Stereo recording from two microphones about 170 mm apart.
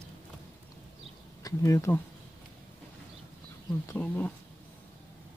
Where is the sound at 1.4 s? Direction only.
20° left (ahead or behind).